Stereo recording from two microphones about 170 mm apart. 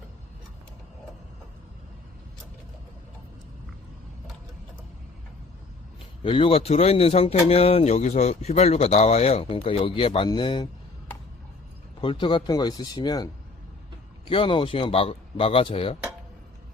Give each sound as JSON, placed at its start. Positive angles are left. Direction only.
{"t": 6.2, "sound": "speech", "side_deg": 30}
{"t": 11.9, "sound": "speech", "side_deg": 30}